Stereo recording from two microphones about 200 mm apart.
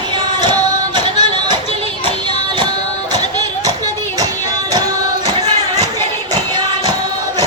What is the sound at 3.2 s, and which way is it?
Music, 20° right (ahead or behind).